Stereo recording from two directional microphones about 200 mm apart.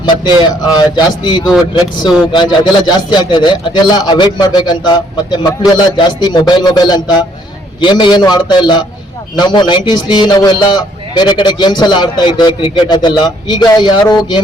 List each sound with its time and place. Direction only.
0.0 s a man's voice: 20° left (ahead or behind)